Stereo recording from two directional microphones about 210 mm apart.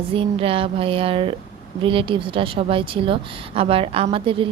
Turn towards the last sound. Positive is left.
turn(degrees=-25)  # may be behind; listen again after turning